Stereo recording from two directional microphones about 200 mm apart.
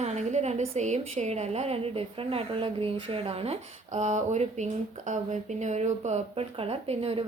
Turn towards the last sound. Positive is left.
turn(degrees=-30)  # may be behind; listen again after turning